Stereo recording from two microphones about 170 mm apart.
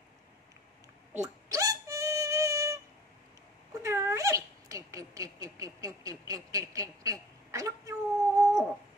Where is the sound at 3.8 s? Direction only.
20° right (ahead or behind).